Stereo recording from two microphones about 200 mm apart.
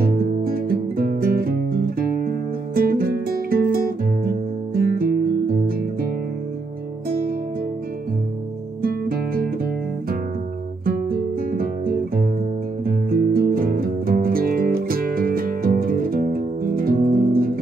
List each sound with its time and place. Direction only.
0.0 s music: 45° right (ahead or behind)
8.8 s music: 50° right (ahead or behind)
10.9 s guitar: 45° right (ahead or behind)
12.8 s music: 45° right (ahead or behind)